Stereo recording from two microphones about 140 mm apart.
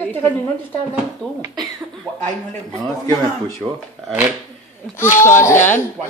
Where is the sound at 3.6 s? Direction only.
20° right (ahead or behind).